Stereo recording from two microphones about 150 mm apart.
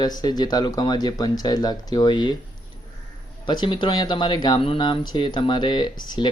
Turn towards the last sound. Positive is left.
turn(degrees=30)  # may be behind; listen again after turning